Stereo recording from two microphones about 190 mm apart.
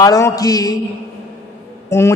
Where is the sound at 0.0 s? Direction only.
15° left (ahead or behind).